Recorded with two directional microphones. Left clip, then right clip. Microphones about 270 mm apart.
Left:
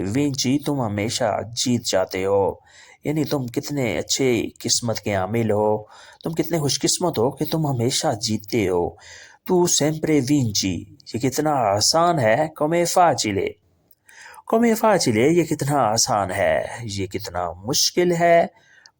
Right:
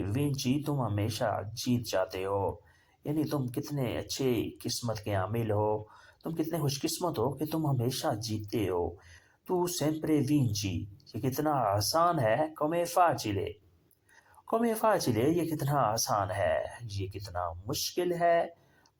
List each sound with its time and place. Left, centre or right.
0.0 s speech: left